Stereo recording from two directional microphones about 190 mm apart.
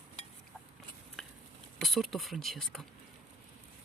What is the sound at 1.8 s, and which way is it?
Speech, centre (ahead or behind).